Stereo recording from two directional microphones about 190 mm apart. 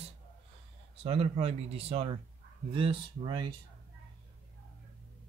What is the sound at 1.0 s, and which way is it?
Speech, 30° right (ahead or behind).